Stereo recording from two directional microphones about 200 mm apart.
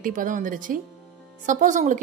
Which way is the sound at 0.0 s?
40° right (ahead or behind).